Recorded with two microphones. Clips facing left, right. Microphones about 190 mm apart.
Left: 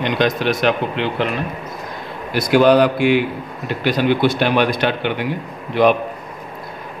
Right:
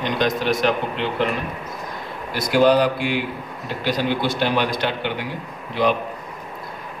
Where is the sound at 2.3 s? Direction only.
65° left (ahead or behind).